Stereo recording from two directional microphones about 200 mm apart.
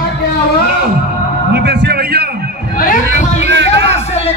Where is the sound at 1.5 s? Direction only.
55° right (ahead or behind).